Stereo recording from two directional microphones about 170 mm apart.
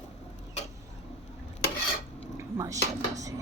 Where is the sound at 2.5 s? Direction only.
20° right (ahead or behind).